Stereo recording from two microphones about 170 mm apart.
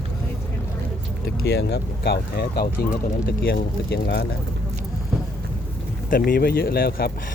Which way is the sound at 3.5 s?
75° left (ahead or behind).